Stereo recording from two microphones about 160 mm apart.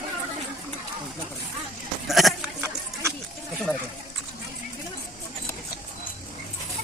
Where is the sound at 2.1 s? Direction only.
Centre (ahead or behind).